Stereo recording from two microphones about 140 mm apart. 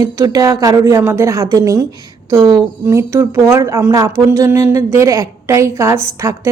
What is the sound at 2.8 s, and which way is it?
Speech, 20° right (ahead or behind).